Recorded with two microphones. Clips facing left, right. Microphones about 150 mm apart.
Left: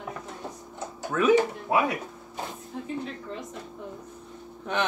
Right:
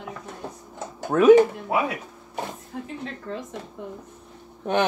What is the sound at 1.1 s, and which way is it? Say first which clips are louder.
Speech: right 7 dB; 50° right (ahead or behind).